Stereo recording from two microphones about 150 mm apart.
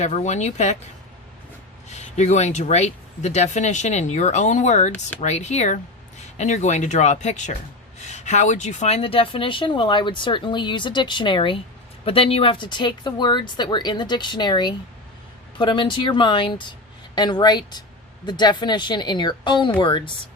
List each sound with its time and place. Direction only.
0.0 s speech: 50° left (ahead or behind)
1.9 s speech: 50° left (ahead or behind); by 20.1 s 30° left (ahead or behind)